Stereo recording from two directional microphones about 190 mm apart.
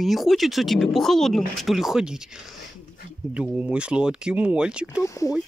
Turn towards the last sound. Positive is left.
turn(degrees=15)  # may be behind; listen again after turning